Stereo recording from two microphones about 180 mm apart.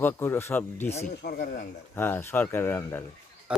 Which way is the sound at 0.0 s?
10° left (ahead or behind).